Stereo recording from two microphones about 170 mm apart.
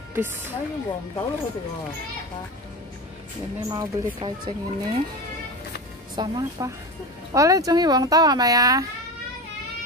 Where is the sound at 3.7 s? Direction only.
25° right (ahead or behind).